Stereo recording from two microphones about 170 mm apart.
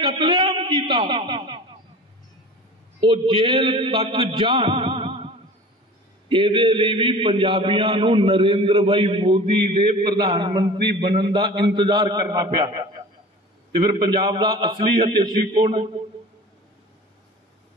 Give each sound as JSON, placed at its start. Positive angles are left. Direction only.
{"t": 0.1, "sound": "a man's voice", "side_deg": -25}
{"t": 3.0, "sound": "a man's voice", "side_deg": -30}